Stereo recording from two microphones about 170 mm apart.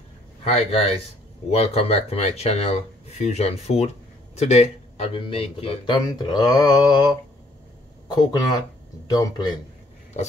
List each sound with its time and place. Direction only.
0.4 s speech: 35° left (ahead or behind)